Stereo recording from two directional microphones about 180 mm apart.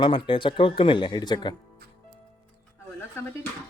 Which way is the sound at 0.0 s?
25° left (ahead or behind).